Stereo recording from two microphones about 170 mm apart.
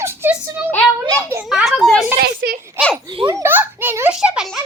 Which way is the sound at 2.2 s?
70° right (ahead or behind).